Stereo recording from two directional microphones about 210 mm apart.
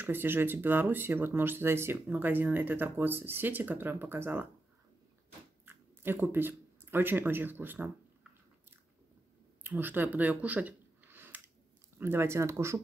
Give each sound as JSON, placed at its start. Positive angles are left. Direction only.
{"t": 0.0, "sound": "speech", "side_deg": -10}
{"t": 5.7, "sound": "speech", "side_deg": -10}
{"t": 9.6, "sound": "a sound", "side_deg": -10}
{"t": 12.0, "sound": "speech", "side_deg": -10}